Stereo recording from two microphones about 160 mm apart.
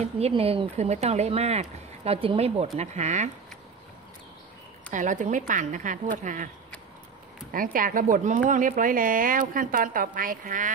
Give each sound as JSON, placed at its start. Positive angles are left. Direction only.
{"t": 0.3, "sound": "speech", "side_deg": -35}
{"t": 4.9, "sound": "speech", "side_deg": -50}
{"t": 7.5, "sound": "a woman's voice", "side_deg": -60}